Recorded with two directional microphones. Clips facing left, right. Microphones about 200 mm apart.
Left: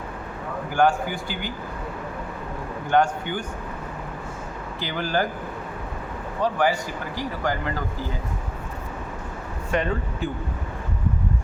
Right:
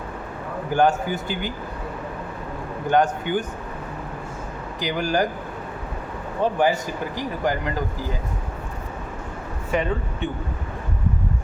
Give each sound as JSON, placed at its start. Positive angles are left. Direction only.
{"t": 0.8, "sound": "a man's voice", "side_deg": -20}
{"t": 2.9, "sound": "speech", "side_deg": -15}
{"t": 4.8, "sound": "speech", "side_deg": -15}
{"t": 6.4, "sound": "a man's voice", "side_deg": -20}
{"t": 9.7, "sound": "speech", "side_deg": 0}